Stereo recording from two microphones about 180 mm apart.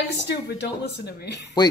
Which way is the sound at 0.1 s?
70° left (ahead or behind).